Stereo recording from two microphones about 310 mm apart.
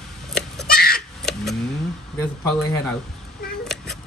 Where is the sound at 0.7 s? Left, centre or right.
Left.